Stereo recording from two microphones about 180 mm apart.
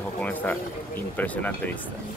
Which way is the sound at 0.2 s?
10° left (ahead or behind).